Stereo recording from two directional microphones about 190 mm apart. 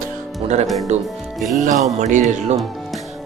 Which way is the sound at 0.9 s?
35° right (ahead or behind).